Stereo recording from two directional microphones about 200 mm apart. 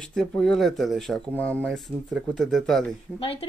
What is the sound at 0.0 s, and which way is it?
Speech, 5° left (ahead or behind).